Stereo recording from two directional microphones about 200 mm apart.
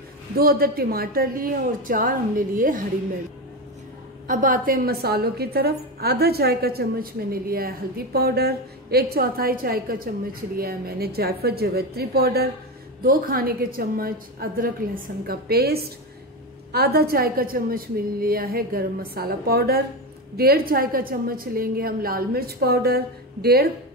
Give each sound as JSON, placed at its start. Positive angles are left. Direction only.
{"t": 0.4, "sound": "a woman's voice", "side_deg": -50}
{"t": 4.3, "sound": "a woman's voice", "side_deg": -40}